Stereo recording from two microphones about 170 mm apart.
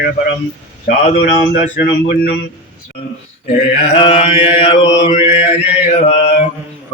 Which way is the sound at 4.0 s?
35° left (ahead or behind).